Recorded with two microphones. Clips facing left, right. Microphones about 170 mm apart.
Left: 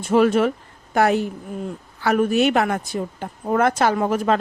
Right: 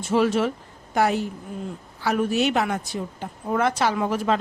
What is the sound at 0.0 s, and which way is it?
Speech, 55° left (ahead or behind).